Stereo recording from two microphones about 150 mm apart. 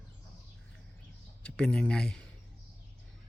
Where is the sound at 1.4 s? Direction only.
5° left (ahead or behind).